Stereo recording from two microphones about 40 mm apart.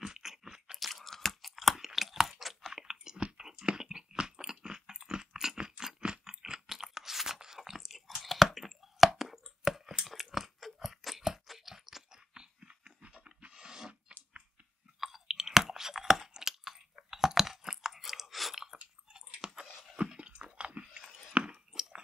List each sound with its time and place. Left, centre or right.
0.0 s crunch: centre
0.7 s chewing: centre
9.7 s a sound: centre
10.0 s crunch: centre
12.4 s chewing: right
15.0 s chewing: centre
19.3 s chewing: centre